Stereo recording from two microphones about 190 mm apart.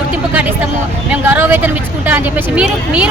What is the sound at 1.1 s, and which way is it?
Speech, 10° right (ahead or behind).